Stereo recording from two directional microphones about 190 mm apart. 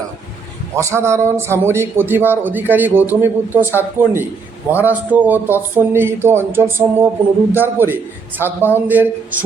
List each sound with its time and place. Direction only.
0.8 s speech: 15° right (ahead or behind)